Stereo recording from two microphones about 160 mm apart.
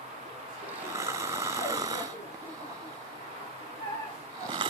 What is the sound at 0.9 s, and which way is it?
Snoring, 20° right (ahead or behind).